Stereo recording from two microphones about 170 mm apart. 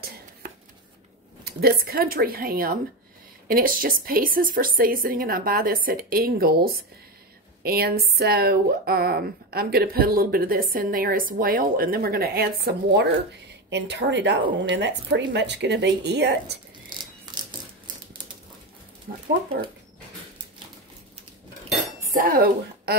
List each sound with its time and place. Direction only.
1.4 s speech: 65° right (ahead or behind)
13.7 s a woman's voice: 90° right
17.0 s a sound: 25° right (ahead or behind)
19.1 s speech: 65° right (ahead or behind)
22.1 s speech: 55° right (ahead or behind)